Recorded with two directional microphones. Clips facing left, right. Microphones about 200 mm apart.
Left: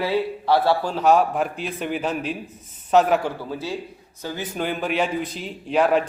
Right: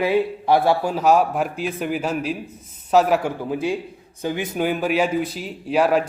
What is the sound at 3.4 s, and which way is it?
A man's voice, 15° right (ahead or behind).